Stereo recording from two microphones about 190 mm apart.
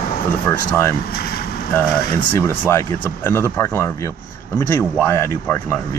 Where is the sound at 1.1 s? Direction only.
55° left (ahead or behind).